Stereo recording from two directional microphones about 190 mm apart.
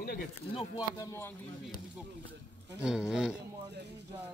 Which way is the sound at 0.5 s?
20° left (ahead or behind).